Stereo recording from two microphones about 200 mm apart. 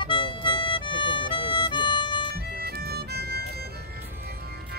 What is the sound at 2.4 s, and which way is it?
Music, 55° right (ahead or behind).